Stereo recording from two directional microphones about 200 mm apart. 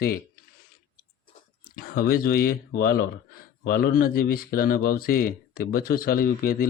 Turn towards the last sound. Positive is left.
turn(degrees=45)  # may be behind; listen again after turning